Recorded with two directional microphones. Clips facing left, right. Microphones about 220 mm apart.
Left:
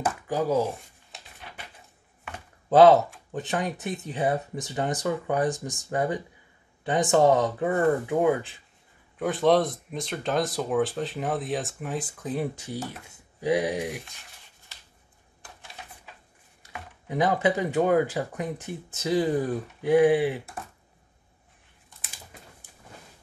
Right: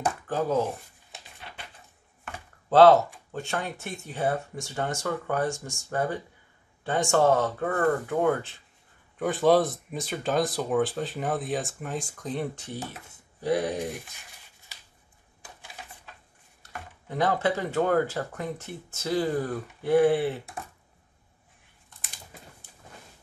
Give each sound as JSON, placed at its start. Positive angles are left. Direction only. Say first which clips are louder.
{"t": 0.0, "sound": "speech", "louder": "left 1 dB", "side_deg": 5}
{"t": 2.7, "sound": "speech", "louder": "left 1 dB", "side_deg": 15}
{"t": 9.2, "sound": "speech", "louder": "even", "side_deg": 0}
{"t": 16.7, "sound": "speech", "louder": "left 3 dB", "side_deg": 15}